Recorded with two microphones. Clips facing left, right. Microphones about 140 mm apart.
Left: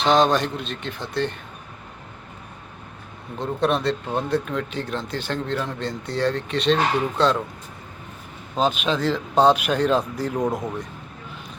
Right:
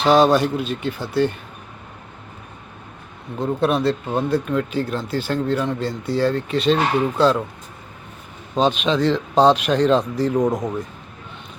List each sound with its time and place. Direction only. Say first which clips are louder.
0.0 s speech: right 4 dB; 5° right (ahead or behind)
3.3 s speech: right 3 dB; 5° right (ahead or behind)
8.5 s speech: right 4 dB; 5° left (ahead or behind)